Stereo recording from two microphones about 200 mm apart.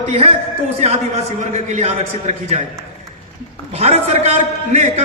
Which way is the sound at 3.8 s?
30° right (ahead or behind).